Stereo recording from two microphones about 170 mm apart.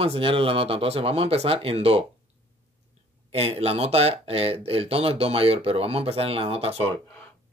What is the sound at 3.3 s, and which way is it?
Speech, 35° right (ahead or behind).